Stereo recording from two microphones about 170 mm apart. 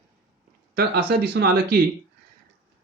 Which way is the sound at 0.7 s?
65° right (ahead or behind).